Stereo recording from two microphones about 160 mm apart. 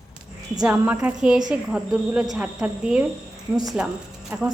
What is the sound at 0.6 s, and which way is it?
A woman's voice, 10° right (ahead or behind).